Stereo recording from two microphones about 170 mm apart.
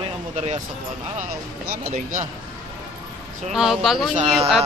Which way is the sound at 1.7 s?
50° right (ahead or behind).